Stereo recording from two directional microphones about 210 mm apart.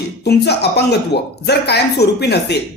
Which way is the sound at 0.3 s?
50° left (ahead or behind).